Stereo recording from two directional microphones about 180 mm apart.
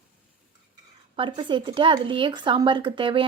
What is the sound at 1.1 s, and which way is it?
A woman's voice, 25° right (ahead or behind).